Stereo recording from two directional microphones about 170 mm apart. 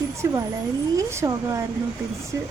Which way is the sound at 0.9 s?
15° right (ahead or behind).